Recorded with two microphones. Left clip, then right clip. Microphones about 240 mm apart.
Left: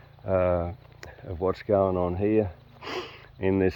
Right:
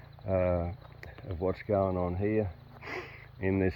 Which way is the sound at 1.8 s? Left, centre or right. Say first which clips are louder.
Left 6 dB; left.